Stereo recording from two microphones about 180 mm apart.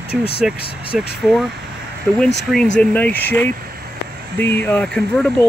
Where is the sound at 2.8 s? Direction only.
10° left (ahead or behind).